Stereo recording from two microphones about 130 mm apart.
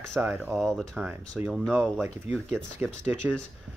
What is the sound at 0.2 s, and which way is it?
Speech, 20° right (ahead or behind).